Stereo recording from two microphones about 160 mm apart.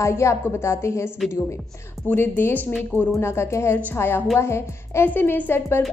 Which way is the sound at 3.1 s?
15° left (ahead or behind).